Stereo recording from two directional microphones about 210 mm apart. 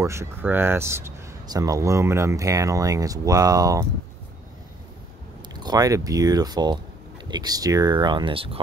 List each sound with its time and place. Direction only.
0.0 s speech: 15° right (ahead or behind)
5.5 s speech: 20° right (ahead or behind)